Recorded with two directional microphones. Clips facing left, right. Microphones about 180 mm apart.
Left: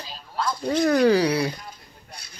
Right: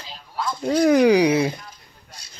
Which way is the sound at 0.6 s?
10° right (ahead or behind).